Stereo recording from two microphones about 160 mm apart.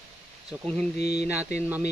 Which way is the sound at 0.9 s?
90° left.